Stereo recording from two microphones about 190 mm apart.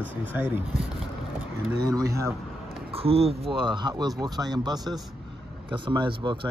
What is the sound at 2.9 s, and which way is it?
Speech, 30° right (ahead or behind).